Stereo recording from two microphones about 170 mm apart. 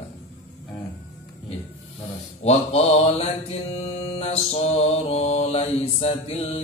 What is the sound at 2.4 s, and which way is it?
Mantra, 40° left (ahead or behind).